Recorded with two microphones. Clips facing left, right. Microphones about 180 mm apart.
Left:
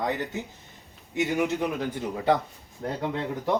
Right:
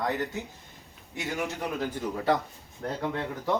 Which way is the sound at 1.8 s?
20° left (ahead or behind).